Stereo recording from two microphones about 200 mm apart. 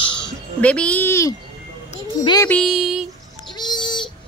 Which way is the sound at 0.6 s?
5° left (ahead or behind).